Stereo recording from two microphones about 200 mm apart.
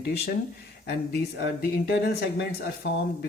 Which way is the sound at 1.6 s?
50° left (ahead or behind).